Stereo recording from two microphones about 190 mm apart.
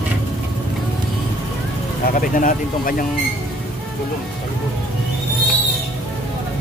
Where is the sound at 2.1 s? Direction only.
45° left (ahead or behind).